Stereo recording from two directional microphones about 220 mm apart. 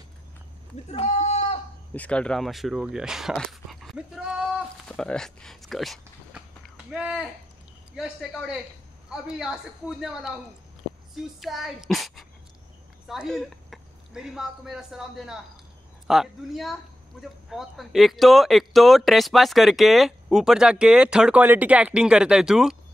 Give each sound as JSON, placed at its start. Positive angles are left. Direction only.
{"t": 0.9, "sound": "goat", "side_deg": 30}
{"t": 2.0, "sound": "speech", "side_deg": 5}
{"t": 11.4, "sound": "a child's voice", "side_deg": 0}